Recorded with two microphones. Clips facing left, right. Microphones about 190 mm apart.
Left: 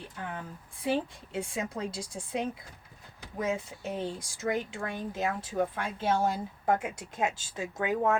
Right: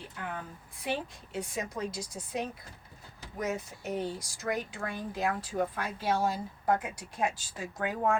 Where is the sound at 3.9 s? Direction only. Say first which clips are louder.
Right 2 dB; 25° left (ahead or behind).